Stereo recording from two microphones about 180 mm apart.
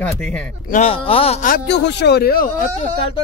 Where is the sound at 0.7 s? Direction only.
35° left (ahead or behind).